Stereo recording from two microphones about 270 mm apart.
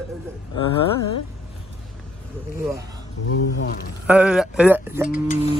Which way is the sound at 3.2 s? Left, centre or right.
Left.